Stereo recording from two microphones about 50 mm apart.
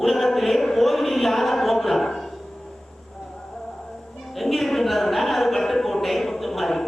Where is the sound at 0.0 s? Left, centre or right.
Centre.